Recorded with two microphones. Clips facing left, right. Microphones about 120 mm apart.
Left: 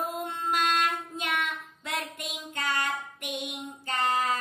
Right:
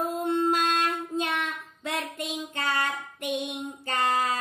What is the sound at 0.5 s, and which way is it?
Child singing, 25° right (ahead or behind).